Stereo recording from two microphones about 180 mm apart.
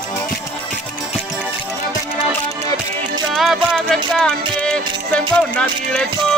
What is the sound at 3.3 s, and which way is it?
Music, centre (ahead or behind).